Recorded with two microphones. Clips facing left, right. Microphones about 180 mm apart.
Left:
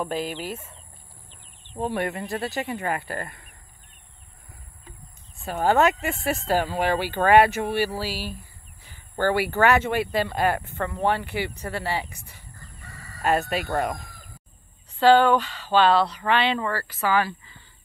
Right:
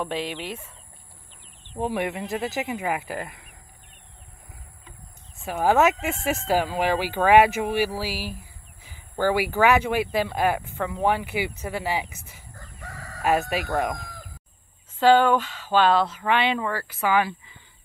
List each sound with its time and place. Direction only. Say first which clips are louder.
0.0 s speech: left 1 dB; 5° left (ahead or behind)
1.8 s speech: even; 5° right (ahead or behind)
5.4 s speech: even; 5° right (ahead or behind)
12.5 s chicken: right 7 dB; 80° right
13.2 s speech: even; 5° right (ahead or behind)
15.0 s speech: left 1 dB; 10° right (ahead or behind)